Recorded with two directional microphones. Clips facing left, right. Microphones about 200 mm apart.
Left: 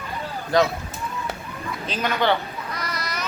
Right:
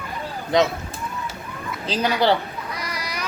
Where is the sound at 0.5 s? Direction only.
20° right (ahead or behind).